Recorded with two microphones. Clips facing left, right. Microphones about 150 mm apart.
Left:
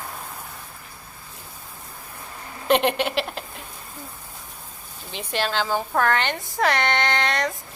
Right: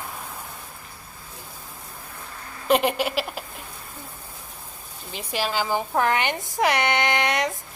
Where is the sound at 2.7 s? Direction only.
5° right (ahead or behind).